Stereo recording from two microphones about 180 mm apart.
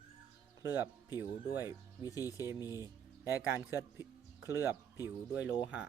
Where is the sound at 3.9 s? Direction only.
15° right (ahead or behind).